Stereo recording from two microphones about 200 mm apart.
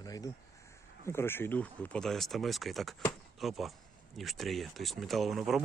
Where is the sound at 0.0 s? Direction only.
20° left (ahead or behind).